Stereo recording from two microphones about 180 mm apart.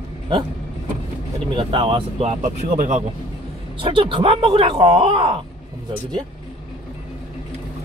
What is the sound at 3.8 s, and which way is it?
Speech, 30° right (ahead or behind).